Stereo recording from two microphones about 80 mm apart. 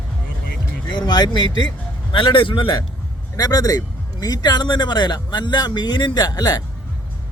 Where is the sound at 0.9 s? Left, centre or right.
Left.